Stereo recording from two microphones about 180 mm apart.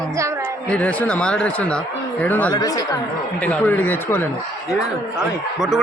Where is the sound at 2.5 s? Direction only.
20° left (ahead or behind).